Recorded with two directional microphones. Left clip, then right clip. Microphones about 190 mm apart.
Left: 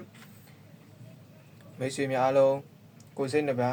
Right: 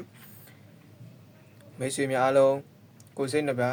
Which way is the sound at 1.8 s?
25° right (ahead or behind).